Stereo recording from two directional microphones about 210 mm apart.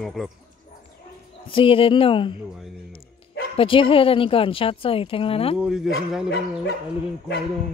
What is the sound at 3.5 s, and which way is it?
A woman's voice, 25° left (ahead or behind).